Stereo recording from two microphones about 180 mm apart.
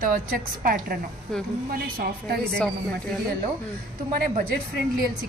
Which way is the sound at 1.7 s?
55° right (ahead or behind).